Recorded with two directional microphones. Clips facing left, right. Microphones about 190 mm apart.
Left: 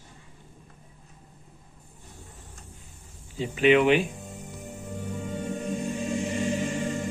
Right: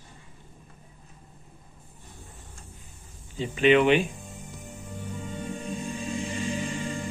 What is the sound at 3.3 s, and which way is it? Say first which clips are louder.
Speech: even; 10° left (ahead or behind).